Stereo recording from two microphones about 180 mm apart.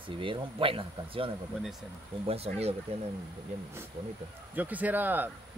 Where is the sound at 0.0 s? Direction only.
30° right (ahead or behind).